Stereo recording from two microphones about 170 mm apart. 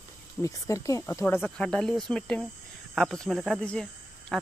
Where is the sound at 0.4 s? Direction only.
20° left (ahead or behind).